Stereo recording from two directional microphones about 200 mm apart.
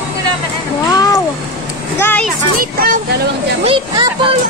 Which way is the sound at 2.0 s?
10° left (ahead or behind).